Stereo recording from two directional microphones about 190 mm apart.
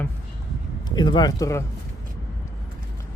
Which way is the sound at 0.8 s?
20° left (ahead or behind).